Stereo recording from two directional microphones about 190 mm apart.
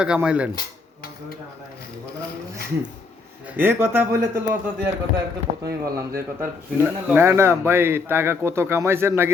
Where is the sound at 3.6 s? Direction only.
10° right (ahead or behind).